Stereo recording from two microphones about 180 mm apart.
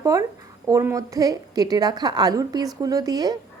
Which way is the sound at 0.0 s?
20° right (ahead or behind).